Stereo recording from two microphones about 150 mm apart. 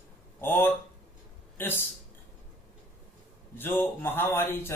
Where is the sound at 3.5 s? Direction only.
15° left (ahead or behind).